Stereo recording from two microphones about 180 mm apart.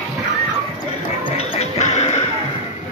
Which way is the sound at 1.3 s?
35° left (ahead or behind).